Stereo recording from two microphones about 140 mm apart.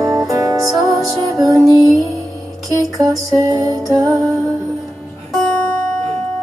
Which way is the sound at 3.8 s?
Centre (ahead or behind).